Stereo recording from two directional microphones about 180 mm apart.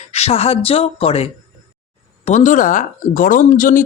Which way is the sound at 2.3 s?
40° left (ahead or behind).